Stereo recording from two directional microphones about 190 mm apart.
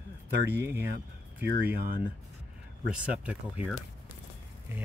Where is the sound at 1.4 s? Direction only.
60° right (ahead or behind).